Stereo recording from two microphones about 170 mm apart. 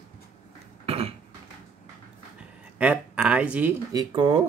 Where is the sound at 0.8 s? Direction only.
35° right (ahead or behind).